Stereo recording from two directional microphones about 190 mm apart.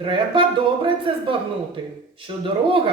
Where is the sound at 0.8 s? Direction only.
25° right (ahead or behind).